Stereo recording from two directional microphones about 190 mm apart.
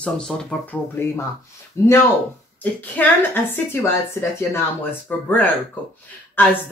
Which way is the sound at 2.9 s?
10° left (ahead or behind).